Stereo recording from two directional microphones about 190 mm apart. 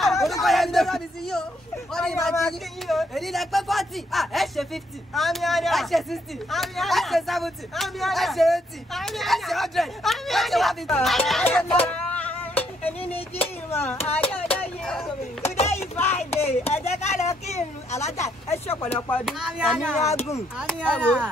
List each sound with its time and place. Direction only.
0.0 s speech: centre (ahead or behind)
11.4 s music: 5° left (ahead or behind)
13.7 s speech: 10° left (ahead or behind)
14.3 s a sound: 10° left (ahead or behind)
15.7 s music: 15° left (ahead or behind)
16.3 s speech: 35° left (ahead or behind)
18.2 s speech: 15° left (ahead or behind)
19.2 s speech: centre (ahead or behind)
20.1 s a sound: 35° left (ahead or behind)
20.5 s speech: 5° left (ahead or behind)